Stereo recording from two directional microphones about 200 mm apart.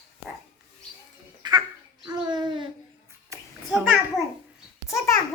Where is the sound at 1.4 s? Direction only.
20° right (ahead or behind).